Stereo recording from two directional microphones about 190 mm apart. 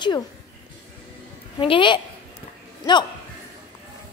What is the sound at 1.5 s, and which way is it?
Speech, 25° left (ahead or behind).